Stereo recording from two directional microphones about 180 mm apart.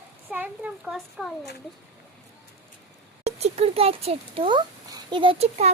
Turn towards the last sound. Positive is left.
turn(degrees=-35)  # may be behind; listen again after turning